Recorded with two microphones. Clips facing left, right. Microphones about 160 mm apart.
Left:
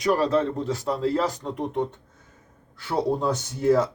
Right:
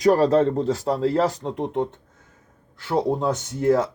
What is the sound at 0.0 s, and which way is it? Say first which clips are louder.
Speech: right 5 dB; 40° right (ahead or behind).